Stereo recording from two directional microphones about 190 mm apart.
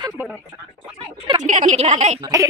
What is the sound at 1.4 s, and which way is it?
Speech, 40° right (ahead or behind).